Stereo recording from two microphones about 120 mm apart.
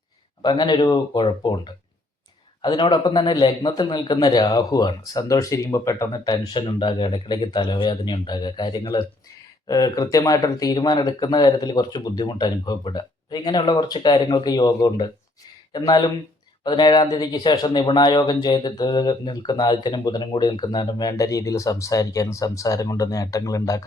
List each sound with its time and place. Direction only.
0.4 s speech: 40° left (ahead or behind)
9.6 s speech: 30° left (ahead or behind)